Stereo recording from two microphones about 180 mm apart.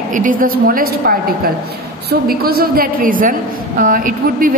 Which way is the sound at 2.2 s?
55° right (ahead or behind).